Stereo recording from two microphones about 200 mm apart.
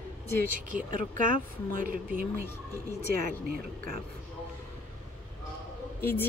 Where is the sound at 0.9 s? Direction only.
40° right (ahead or behind).